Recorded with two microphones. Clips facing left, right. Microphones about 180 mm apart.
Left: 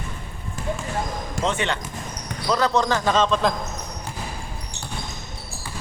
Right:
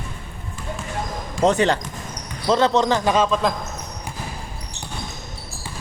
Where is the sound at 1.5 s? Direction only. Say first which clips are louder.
Right 8 dB; 40° right (ahead or behind).